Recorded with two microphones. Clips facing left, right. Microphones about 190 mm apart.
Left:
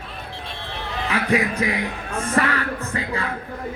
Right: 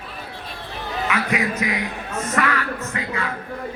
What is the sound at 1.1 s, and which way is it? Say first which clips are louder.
A man's voice: left 3 dB; 35° left (ahead or behind).